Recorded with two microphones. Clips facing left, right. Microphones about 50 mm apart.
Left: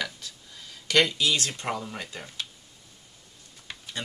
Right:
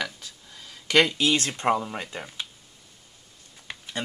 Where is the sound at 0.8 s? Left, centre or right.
Centre.